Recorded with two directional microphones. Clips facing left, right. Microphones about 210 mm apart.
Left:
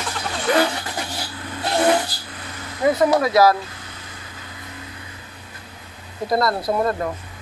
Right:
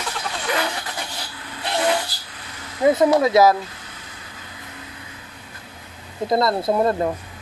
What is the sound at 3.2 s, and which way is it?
Speech, 20° right (ahead or behind).